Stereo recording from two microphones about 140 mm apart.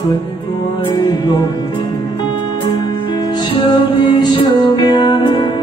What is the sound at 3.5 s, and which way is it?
Music, 30° left (ahead or behind).